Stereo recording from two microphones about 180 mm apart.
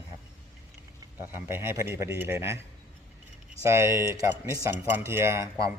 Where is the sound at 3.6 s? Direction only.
15° right (ahead or behind).